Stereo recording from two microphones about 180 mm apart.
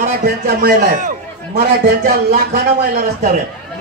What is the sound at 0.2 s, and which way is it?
A man's voice, 60° right (ahead or behind).